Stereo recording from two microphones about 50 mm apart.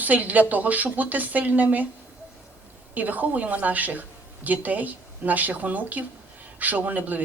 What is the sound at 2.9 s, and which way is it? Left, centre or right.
A woman's voice, right.